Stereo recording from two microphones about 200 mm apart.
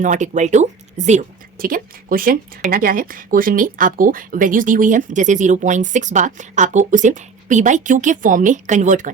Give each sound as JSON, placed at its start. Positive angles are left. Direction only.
{"t": 0.0, "sound": "speech", "side_deg": -40}